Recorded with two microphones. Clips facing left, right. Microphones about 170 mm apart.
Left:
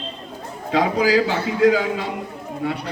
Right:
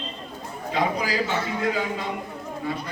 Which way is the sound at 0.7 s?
90° left.